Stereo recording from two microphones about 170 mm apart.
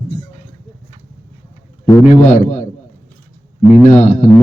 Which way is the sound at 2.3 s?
45° left (ahead or behind).